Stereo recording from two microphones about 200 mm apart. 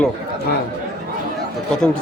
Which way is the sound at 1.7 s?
5° left (ahead or behind).